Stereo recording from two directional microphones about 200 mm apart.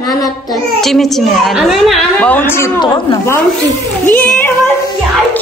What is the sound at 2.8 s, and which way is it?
Speech, 20° left (ahead or behind).